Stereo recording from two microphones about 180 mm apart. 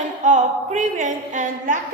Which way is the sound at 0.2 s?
45° right (ahead or behind).